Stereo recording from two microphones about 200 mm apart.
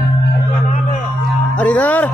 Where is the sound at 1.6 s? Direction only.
5° left (ahead or behind).